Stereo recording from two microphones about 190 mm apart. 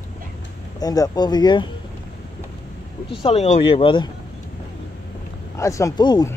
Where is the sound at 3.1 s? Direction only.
30° left (ahead or behind).